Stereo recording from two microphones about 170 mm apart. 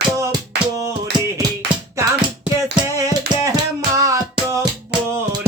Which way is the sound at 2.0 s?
15° right (ahead or behind).